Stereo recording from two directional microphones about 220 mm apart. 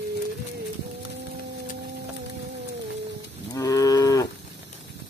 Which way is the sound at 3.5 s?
15° left (ahead or behind).